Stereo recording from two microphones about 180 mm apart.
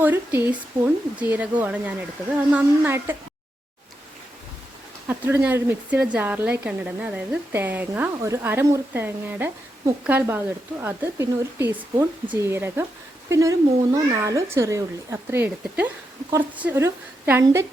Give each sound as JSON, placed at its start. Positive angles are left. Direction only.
{"t": 0.0, "sound": "speech", "side_deg": -10}
{"t": 5.0, "sound": "speech", "side_deg": -10}